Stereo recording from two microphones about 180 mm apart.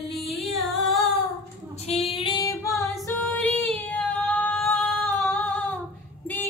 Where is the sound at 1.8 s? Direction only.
35° left (ahead or behind).